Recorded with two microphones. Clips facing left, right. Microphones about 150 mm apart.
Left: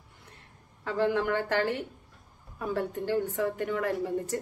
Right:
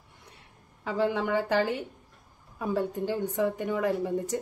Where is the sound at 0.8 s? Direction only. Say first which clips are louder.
Even; 15° right (ahead or behind).